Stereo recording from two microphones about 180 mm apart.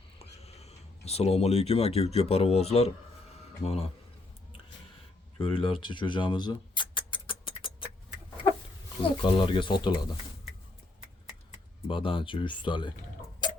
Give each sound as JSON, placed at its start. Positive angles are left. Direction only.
{"t": 0.4, "sound": "speech", "side_deg": 35}
{"t": 5.4, "sound": "a sound", "side_deg": 30}
{"t": 9.0, "sound": "speech", "side_deg": 30}
{"t": 11.9, "sound": "speech", "side_deg": 30}